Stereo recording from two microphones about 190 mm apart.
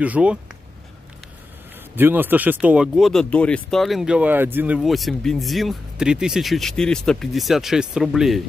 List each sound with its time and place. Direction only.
0.0 s speech: 5° right (ahead or behind)
2.0 s speech: 10° right (ahead or behind)